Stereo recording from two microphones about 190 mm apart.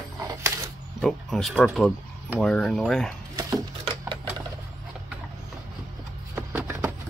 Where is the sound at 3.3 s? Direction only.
20° right (ahead or behind).